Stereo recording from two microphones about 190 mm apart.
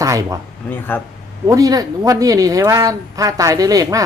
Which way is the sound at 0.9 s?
10° left (ahead or behind).